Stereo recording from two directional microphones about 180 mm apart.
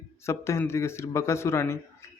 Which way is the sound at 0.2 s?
15° left (ahead or behind).